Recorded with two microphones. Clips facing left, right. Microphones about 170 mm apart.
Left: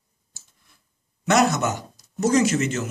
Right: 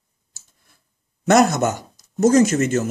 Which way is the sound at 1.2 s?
45° right (ahead or behind).